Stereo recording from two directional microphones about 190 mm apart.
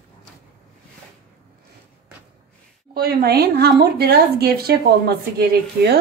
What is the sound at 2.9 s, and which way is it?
Speech, 55° right (ahead or behind).